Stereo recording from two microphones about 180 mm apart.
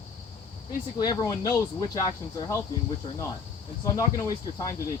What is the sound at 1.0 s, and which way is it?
Speech, 20° left (ahead or behind).